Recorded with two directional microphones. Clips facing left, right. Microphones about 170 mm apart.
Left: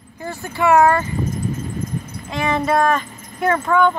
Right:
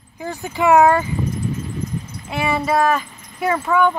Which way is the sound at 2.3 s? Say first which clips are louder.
Left 1 dB; 10° right (ahead or behind).